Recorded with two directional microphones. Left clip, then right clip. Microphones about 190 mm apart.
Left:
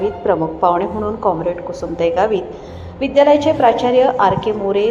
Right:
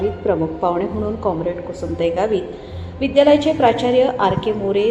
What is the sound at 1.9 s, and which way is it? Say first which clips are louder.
A woman's voice: left 3 dB; 10° left (ahead or behind).